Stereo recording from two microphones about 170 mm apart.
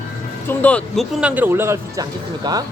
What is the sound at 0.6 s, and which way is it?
Speech, 10° left (ahead or behind).